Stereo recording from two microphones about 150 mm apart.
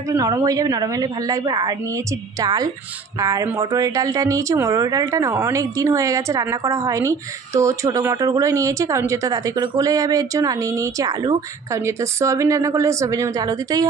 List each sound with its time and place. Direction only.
0.1 s a woman's voice: 25° right (ahead or behind)